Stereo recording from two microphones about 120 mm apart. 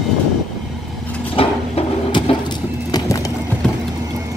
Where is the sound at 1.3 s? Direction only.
50° left (ahead or behind).